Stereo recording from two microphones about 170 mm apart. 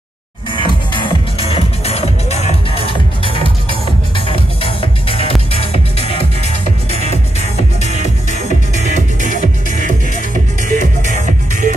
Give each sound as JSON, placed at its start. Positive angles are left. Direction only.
{"t": 0.9, "sound": "music", "side_deg": 30}
{"t": 4.6, "sound": "music", "side_deg": 30}
{"t": 9.4, "sound": "music", "side_deg": -50}